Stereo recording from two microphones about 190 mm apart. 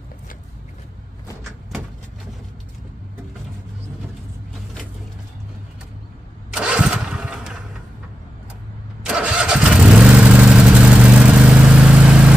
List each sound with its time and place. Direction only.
6.5 s engine starting: 5° right (ahead or behind)
9.0 s vehicle: 5° right (ahead or behind)